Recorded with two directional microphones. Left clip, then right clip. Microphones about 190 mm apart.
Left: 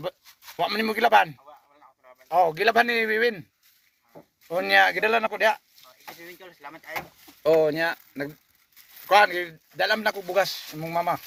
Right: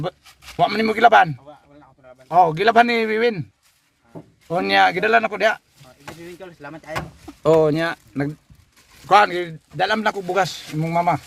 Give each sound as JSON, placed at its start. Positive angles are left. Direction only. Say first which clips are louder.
{"t": 0.5, "sound": "a man's voice", "louder": "right 7 dB", "side_deg": -15}
{"t": 4.4, "sound": "a man's voice", "louder": "right 3 dB", "side_deg": -15}
{"t": 7.4, "sound": "a man's voice", "louder": "right 4 dB", "side_deg": -15}